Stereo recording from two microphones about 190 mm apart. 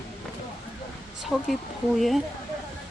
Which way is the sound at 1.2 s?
Centre (ahead or behind).